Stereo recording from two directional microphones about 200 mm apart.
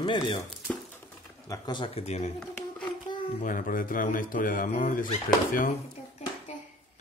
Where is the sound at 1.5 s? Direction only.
20° left (ahead or behind).